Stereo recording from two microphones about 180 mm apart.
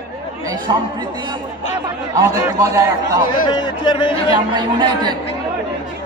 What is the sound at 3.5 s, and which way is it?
Speech, 25° left (ahead or behind).